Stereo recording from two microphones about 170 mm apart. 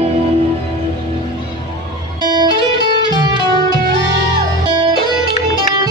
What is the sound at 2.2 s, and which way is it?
Music, 25° right (ahead or behind).